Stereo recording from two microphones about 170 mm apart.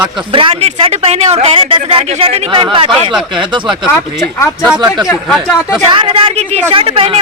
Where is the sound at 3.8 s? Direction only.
15° left (ahead or behind).